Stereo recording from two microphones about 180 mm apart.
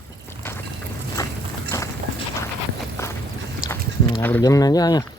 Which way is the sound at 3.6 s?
15° left (ahead or behind).